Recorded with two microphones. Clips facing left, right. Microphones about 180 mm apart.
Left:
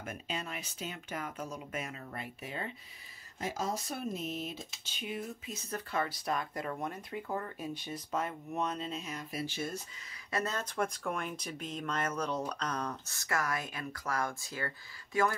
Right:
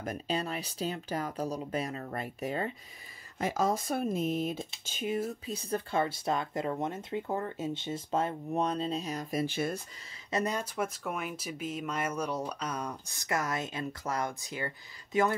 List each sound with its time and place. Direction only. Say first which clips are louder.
0.0 s speech: right 7 dB; 35° right (ahead or behind)
3.3 s speech: right 6 dB; 60° right (ahead or behind)
5.5 s speech: right 4 dB; 30° right (ahead or behind); by 9.8 s 55° right (ahead or behind)
10.3 s speech: right 3 dB; 15° right (ahead or behind)